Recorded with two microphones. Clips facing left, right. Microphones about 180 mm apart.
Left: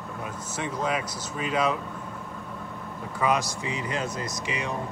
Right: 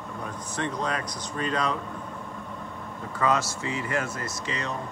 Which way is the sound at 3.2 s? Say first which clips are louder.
Even; 15° left (ahead or behind).